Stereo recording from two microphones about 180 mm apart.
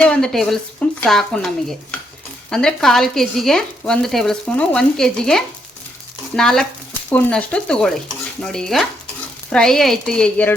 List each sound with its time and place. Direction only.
0.0 s a woman's voice: 5° left (ahead or behind)